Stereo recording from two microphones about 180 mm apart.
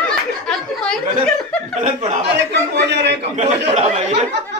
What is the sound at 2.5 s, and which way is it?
Speech, 70° right (ahead or behind).